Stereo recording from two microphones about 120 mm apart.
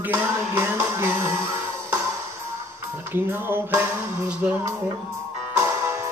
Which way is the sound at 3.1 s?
20° right (ahead or behind).